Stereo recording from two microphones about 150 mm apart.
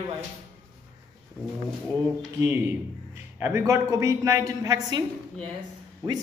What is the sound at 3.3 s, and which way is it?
A woman's voice, 15° right (ahead or behind).